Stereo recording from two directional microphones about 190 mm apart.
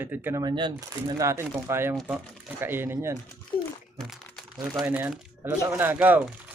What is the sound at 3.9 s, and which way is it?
Crumpling, centre (ahead or behind).